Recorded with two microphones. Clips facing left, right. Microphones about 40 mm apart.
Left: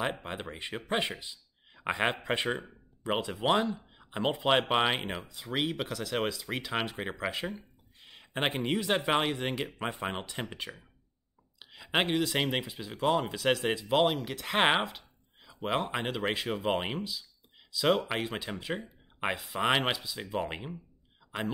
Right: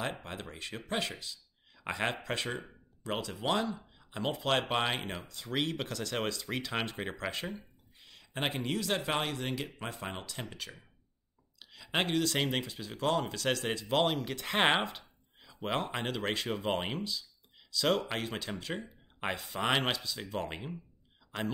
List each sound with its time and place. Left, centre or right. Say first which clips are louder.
0.0 s speech: left 4 dB; centre